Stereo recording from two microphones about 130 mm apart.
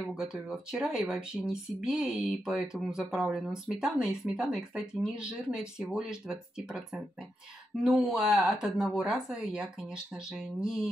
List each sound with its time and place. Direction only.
0.1 s speech: 5° right (ahead or behind)